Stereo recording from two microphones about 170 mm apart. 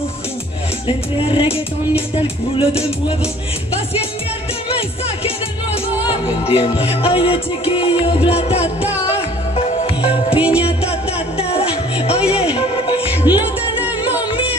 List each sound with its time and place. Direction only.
0.8 s music: 30° left (ahead or behind)
6.0 s music: 35° left (ahead or behind)
10.3 s music: 5° right (ahead or behind)
10.9 s music: 35° left (ahead or behind)
13.3 s music: 25° left (ahead or behind)
13.7 s music: 10° right (ahead or behind)